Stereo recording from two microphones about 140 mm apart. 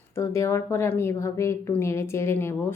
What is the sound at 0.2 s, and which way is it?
A woman's voice, 20° left (ahead or behind).